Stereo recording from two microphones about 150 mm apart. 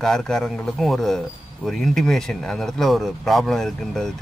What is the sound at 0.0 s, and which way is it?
Speech, 5° left (ahead or behind).